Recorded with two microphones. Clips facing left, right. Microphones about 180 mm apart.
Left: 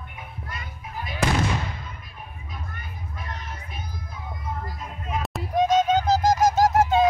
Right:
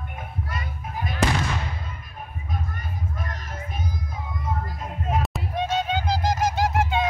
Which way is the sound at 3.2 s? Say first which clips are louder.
Right 2 dB; 50° right (ahead or behind).